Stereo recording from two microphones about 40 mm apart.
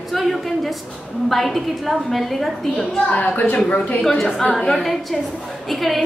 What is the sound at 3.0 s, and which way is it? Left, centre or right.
Speech, left.